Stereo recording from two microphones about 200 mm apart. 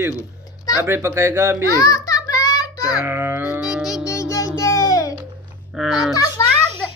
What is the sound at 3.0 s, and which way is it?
Music, 10° right (ahead or behind).